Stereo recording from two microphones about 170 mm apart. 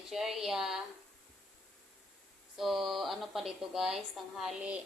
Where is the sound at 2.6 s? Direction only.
Centre (ahead or behind).